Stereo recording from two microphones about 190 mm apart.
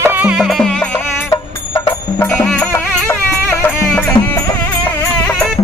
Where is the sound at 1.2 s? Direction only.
15° left (ahead or behind).